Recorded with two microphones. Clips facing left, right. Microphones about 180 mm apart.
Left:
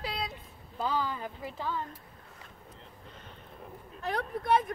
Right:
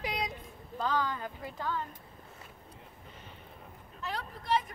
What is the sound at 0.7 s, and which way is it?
Speech, 10° left (ahead or behind).